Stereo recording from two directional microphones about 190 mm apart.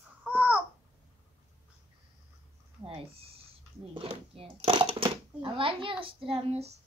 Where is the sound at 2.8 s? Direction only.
30° right (ahead or behind).